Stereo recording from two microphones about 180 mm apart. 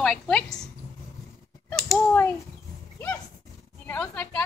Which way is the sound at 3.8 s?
10° left (ahead or behind).